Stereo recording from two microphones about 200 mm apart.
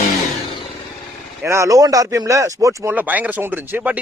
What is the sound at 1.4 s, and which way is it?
Speech, 15° right (ahead or behind).